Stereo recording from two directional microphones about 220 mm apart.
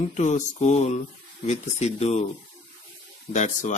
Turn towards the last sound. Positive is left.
turn(degrees=35)  # may be behind; listen again after turning